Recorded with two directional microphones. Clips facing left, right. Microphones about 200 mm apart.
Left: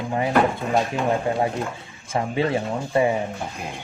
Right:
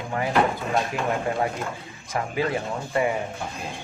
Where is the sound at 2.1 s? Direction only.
25° left (ahead or behind).